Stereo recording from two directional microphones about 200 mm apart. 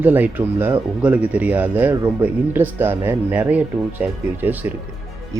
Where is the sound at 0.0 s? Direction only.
10° right (ahead or behind).